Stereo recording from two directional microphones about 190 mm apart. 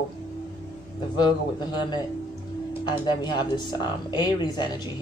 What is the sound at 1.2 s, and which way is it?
Speech, 20° left (ahead or behind).